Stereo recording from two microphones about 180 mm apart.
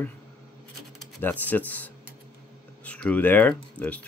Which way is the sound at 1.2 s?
10° left (ahead or behind).